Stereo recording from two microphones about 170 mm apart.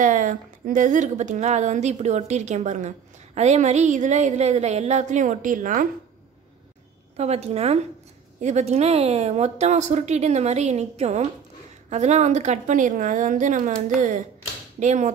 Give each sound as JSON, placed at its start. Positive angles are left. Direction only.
{"t": 0.0, "sound": "a woman's voice", "side_deg": -50}
{"t": 7.2, "sound": "a woman's voice", "side_deg": -40}